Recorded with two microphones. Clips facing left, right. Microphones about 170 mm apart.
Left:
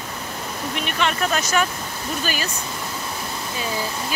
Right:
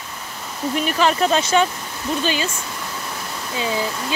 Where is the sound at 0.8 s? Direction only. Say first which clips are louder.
Right 5 dB; 35° right (ahead or behind).